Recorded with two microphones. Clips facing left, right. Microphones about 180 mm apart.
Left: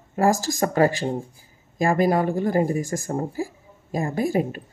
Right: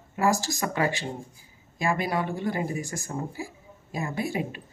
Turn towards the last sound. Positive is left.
turn(degrees=40)  # may be behind; listen again after turning